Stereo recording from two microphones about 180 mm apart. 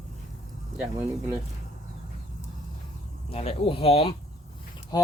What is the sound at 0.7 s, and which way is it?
Speech, 10° right (ahead or behind).